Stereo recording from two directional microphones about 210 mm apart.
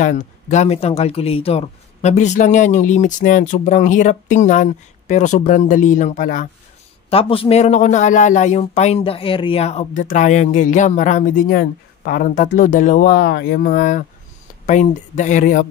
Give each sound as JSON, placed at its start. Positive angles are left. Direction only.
{"t": 0.0, "sound": "speech", "side_deg": 35}
{"t": 7.1, "sound": "speech", "side_deg": 25}